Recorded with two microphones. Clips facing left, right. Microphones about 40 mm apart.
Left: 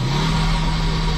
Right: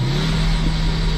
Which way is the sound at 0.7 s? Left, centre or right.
Left.